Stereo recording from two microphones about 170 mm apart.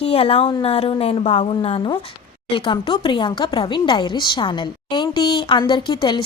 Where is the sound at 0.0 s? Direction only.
35° left (ahead or behind).